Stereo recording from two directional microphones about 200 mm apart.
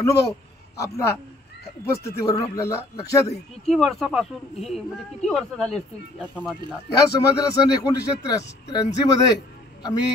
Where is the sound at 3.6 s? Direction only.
Centre (ahead or behind).